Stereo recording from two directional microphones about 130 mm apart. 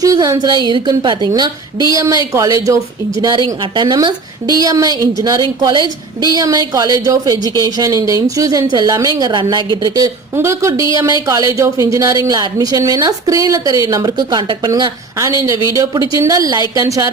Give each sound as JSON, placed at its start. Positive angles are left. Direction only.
{"t": 0.0, "sound": "a woman's voice", "side_deg": -25}